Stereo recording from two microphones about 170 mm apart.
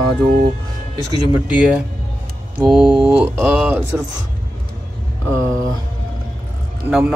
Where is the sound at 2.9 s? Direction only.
10° right (ahead or behind).